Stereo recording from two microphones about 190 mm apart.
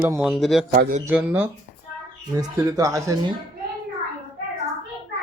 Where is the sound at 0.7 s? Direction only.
45° right (ahead or behind).